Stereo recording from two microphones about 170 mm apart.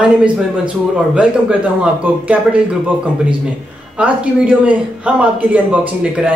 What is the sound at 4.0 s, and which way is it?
A man's voice, 10° right (ahead or behind).